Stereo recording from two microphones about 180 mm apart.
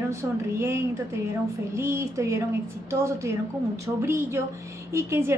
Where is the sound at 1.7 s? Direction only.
15° right (ahead or behind).